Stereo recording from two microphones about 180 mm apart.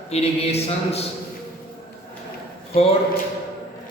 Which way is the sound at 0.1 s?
35° left (ahead or behind).